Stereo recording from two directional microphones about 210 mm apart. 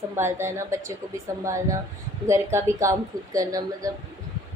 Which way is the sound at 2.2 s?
15° right (ahead or behind).